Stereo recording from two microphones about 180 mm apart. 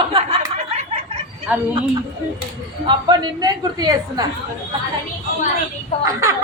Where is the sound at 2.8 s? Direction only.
25° right (ahead or behind).